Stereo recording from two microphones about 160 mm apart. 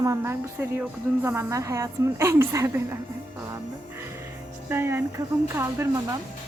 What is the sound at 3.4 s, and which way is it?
Music, 15° right (ahead or behind).